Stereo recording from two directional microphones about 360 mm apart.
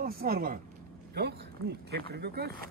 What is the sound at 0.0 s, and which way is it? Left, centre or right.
Speech, right.